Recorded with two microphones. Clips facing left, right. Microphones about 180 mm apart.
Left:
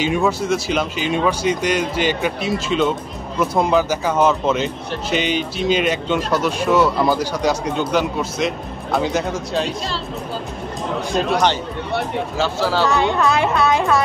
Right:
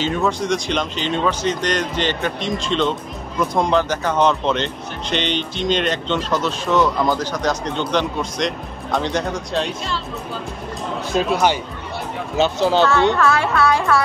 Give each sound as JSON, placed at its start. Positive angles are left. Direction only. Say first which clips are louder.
{"t": 0.0, "sound": "speech", "louder": "left 2 dB", "side_deg": 10}
{"t": 11.1, "sound": "speech", "louder": "right 1 dB", "side_deg": -5}
{"t": 12.4, "sound": "speech", "louder": "right 4 dB", "side_deg": -20}
{"t": 12.8, "sound": "speech", "louder": "right 1 dB", "side_deg": 15}